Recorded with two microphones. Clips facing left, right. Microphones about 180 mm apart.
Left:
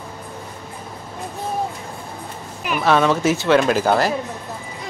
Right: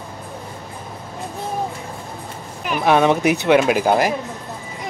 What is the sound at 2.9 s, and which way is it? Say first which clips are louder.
Speech: right 1 dB; 15° right (ahead or behind).